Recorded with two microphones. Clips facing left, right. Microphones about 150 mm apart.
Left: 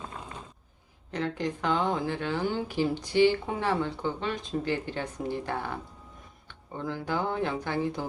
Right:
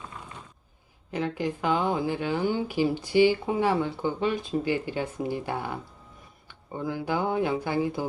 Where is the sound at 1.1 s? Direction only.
5° right (ahead or behind).